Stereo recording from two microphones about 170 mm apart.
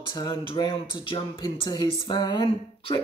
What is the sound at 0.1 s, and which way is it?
Speech, 25° left (ahead or behind).